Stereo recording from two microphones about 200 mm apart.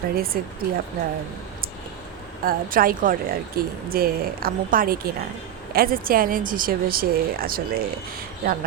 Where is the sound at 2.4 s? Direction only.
45° right (ahead or behind).